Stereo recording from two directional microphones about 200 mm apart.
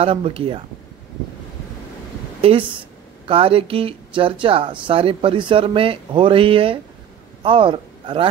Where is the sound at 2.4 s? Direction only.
30° right (ahead or behind).